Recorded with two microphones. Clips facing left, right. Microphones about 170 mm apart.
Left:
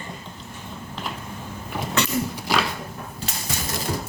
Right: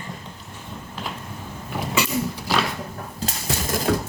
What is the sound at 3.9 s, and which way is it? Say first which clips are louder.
Music: right 7 dB; 75° right (ahead or behind).